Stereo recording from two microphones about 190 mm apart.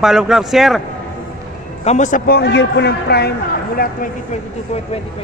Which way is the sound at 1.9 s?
40° left (ahead or behind).